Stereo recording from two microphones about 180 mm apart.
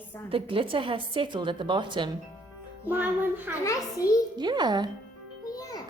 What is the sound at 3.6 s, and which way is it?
Speech, 20° left (ahead or behind).